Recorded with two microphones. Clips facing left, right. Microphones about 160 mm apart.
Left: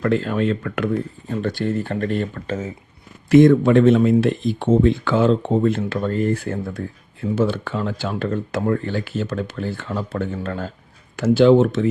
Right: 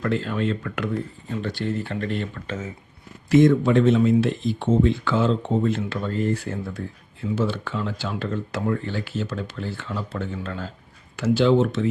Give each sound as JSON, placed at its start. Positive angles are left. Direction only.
{"t": 0.0, "sound": "speech", "side_deg": 50}
{"t": 3.2, "sound": "speech", "side_deg": 60}